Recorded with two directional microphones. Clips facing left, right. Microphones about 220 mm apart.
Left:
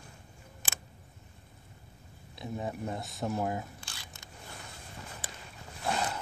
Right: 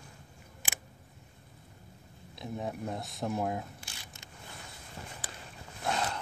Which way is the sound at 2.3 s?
Centre (ahead or behind).